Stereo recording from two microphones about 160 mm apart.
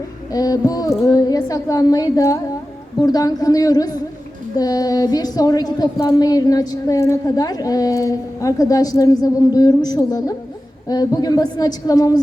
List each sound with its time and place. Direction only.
0.3 s a woman's voice: 25° left (ahead or behind)